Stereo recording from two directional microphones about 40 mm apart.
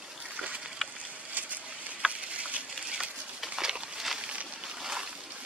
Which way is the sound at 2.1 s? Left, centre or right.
Right.